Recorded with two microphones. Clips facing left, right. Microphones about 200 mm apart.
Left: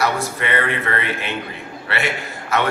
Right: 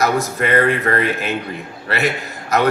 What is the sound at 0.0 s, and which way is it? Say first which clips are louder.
A man's voice: right 4 dB; 45° right (ahead or behind).